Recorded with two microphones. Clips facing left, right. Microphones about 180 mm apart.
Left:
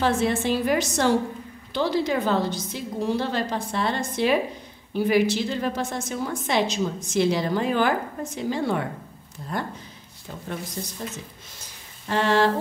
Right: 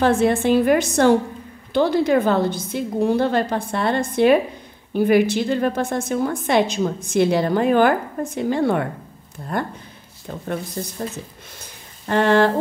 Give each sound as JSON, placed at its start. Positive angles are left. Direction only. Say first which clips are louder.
{"t": 0.0, "sound": "a woman's voice", "louder": "right 6 dB", "side_deg": -55}
{"t": 10.8, "sound": "speech", "louder": "right 5 dB", "side_deg": -55}
{"t": 12.1, "sound": "a woman's voice", "louder": "right 5 dB", "side_deg": -55}